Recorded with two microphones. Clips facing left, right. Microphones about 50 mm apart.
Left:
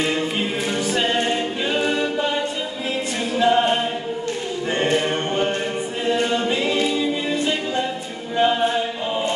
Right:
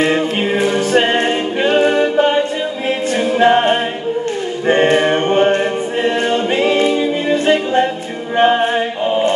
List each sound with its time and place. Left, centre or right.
0.0 s a capella: right
9.0 s choir: right